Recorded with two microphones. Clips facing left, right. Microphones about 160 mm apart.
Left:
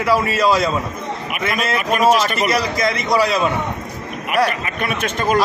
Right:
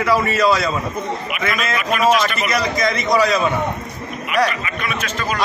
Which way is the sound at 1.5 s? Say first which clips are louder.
Left 3 dB; 40° left (ahead or behind).